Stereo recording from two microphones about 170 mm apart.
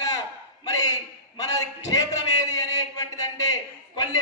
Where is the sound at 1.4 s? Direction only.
20° left (ahead or behind).